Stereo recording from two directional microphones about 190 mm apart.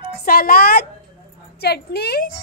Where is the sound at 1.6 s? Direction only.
55° left (ahead or behind).